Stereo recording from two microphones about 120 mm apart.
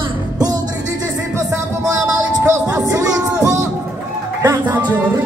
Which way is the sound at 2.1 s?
30° right (ahead or behind).